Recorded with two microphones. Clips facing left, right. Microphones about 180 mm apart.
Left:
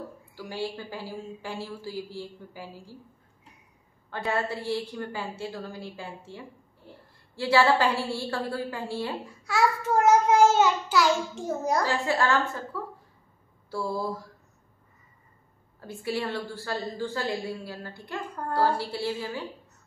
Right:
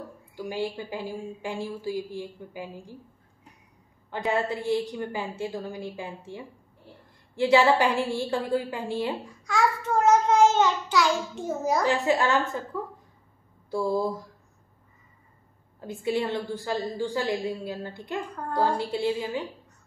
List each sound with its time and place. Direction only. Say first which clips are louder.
0.4 s a woman's voice: right 3 dB; 15° right (ahead or behind)
4.1 s a woman's voice: right 2 dB; 15° right (ahead or behind)
9.2 s a child's voice: even; 5° left (ahead or behind)
11.8 s a woman's voice: right 3 dB; 20° right (ahead or behind)
15.8 s a woman's voice: right 4 dB; 20° right (ahead or behind)